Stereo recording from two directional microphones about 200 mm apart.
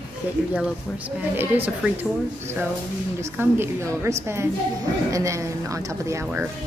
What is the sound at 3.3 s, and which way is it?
A woman's voice, 10° right (ahead or behind).